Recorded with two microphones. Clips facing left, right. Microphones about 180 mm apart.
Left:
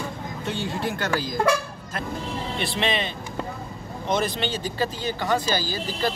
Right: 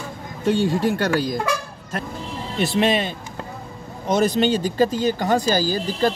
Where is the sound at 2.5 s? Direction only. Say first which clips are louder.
Right 8 dB; 45° right (ahead or behind).